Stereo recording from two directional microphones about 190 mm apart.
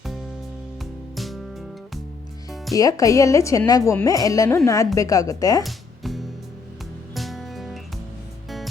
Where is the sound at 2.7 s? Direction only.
20° left (ahead or behind).